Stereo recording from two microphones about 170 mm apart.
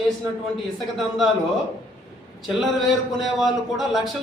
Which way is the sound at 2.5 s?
Centre (ahead or behind).